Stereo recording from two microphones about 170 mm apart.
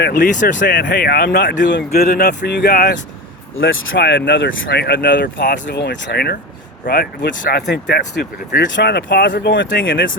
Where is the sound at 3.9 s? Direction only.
90° left.